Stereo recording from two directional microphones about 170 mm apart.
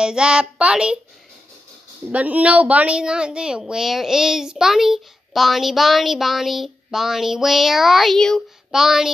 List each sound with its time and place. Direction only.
0.0 s speech: 5° right (ahead or behind)
2.0 s speech: 10° right (ahead or behind)